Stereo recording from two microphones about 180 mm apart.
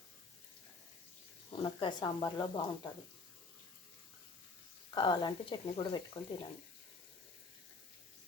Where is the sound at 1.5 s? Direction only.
30° left (ahead or behind).